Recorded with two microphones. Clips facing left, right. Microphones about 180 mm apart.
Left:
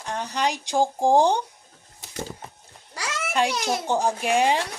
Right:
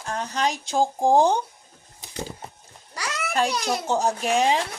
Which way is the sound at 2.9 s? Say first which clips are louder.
Even; 30° left (ahead or behind).